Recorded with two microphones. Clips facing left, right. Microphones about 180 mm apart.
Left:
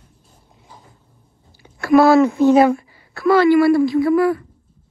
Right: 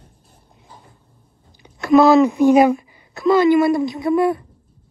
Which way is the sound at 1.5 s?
20° right (ahead or behind).